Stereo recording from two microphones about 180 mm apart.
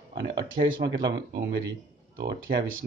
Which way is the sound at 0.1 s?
70° right (ahead or behind).